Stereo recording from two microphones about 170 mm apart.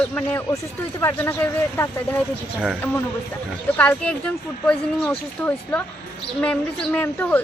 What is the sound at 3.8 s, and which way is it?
Speech, 10° left (ahead or behind).